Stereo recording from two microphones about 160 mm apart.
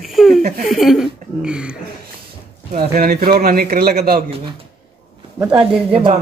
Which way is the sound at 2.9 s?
65° right (ahead or behind).